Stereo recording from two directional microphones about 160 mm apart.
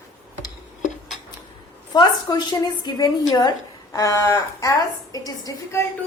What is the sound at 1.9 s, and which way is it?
A woman's voice, 25° left (ahead or behind).